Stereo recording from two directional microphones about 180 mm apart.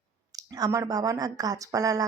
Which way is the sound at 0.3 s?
20° right (ahead or behind).